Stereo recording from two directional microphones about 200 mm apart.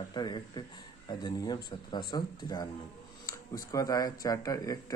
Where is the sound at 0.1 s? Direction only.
20° left (ahead or behind).